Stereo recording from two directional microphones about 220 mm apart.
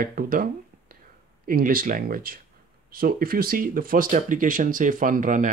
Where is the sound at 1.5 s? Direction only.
40° right (ahead or behind).